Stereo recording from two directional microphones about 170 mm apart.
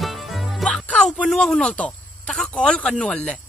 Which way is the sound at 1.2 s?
5° left (ahead or behind).